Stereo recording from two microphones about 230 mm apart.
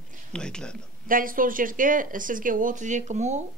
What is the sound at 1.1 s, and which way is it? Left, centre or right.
Speech, right.